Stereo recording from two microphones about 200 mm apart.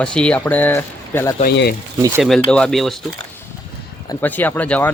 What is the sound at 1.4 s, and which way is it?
Speech, 55° left (ahead or behind).